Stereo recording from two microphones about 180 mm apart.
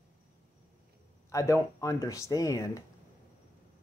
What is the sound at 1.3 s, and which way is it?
Speech, 15° left (ahead or behind).